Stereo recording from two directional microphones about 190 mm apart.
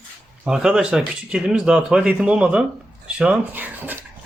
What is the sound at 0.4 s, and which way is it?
Speech, 5° right (ahead or behind).